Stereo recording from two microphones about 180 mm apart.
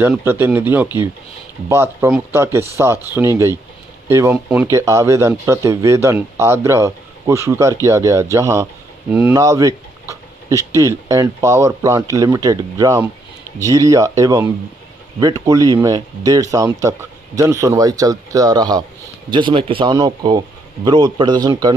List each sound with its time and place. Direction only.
0.2 s speech: 10° right (ahead or behind)